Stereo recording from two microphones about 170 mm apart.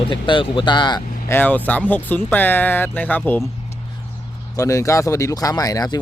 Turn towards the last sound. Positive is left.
turn(degrees=25)  # may be behind; listen again after turning